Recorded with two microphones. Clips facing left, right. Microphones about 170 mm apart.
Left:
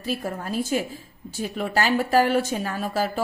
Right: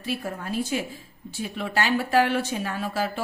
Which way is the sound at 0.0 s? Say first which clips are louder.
Left 2 dB; 40° left (ahead or behind).